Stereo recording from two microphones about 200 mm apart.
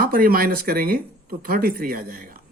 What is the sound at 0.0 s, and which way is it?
Speech, 45° right (ahead or behind).